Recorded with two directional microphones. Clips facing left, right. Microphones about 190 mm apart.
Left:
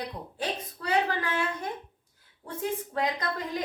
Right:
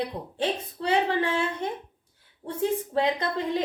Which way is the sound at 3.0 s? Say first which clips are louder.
Right 5 dB; 30° right (ahead or behind).